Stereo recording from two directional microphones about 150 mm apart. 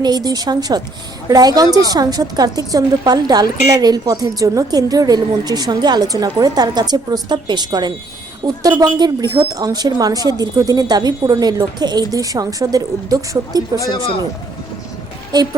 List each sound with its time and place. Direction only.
0.0 s a woman's voice: 25° right (ahead or behind)
13.7 s speech: 25° left (ahead or behind)
15.3 s a woman's voice: 25° right (ahead or behind)